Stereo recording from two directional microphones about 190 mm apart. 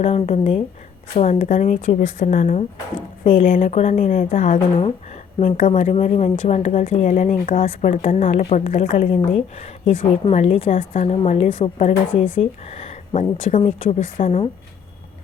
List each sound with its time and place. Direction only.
0.0 s speech: 30° left (ahead or behind)